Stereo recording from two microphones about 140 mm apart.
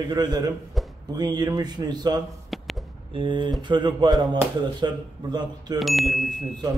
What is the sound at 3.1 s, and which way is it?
Speech, 35° right (ahead or behind).